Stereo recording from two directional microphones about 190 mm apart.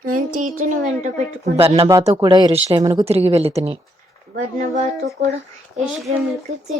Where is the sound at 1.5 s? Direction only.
30° right (ahead or behind).